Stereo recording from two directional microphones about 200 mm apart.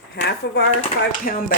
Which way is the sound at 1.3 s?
50° left (ahead or behind).